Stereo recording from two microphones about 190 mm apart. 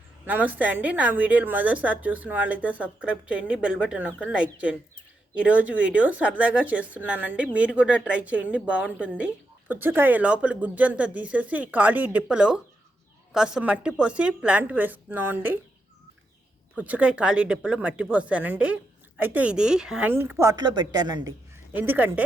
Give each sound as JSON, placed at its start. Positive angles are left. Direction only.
{"t": 0.3, "sound": "a woman's voice", "side_deg": -10}
{"t": 5.3, "sound": "a woman's voice", "side_deg": -5}
{"t": 16.7, "sound": "a woman's voice", "side_deg": -5}
{"t": 21.8, "sound": "a woman's voice", "side_deg": -10}